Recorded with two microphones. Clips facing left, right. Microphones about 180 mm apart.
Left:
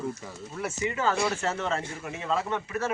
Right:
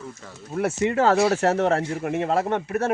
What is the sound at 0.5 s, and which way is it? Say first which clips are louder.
Speech: right 9 dB; 55° right (ahead or behind).